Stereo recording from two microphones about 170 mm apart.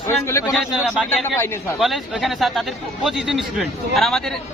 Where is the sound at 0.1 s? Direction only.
15° left (ahead or behind).